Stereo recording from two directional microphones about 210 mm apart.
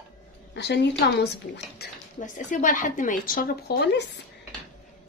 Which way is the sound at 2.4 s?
40° left (ahead or behind).